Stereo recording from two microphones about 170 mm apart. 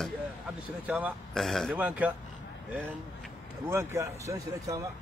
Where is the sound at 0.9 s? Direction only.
10° right (ahead or behind).